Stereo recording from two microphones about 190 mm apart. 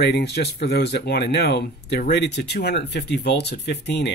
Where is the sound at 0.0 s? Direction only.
60° left (ahead or behind).